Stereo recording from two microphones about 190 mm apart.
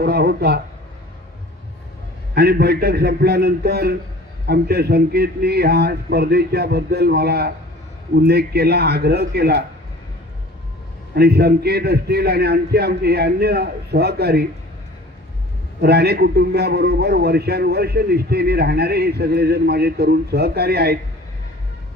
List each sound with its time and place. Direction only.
0.0 s a man's voice: 55° right (ahead or behind)
2.3 s a man's voice: 55° right (ahead or behind)
11.1 s a man's voice: 55° right (ahead or behind)
15.8 s a man's voice: 55° right (ahead or behind)